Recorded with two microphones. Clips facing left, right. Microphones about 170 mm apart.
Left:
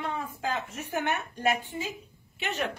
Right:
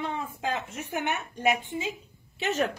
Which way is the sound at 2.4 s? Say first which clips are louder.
Right 5 dB; 40° right (ahead or behind).